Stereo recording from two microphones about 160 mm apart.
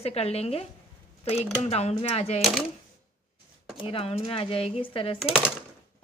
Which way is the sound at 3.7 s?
35° left (ahead or behind).